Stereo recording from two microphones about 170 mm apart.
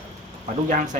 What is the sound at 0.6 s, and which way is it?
Speech, 45° right (ahead or behind).